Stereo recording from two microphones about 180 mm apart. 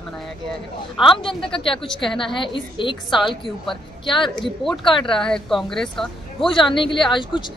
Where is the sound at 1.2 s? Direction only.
30° left (ahead or behind).